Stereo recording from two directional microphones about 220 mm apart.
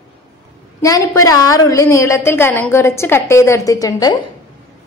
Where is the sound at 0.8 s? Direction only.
15° left (ahead or behind).